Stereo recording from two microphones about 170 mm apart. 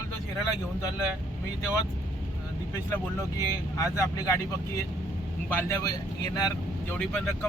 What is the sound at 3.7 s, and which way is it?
Speech, 20° left (ahead or behind).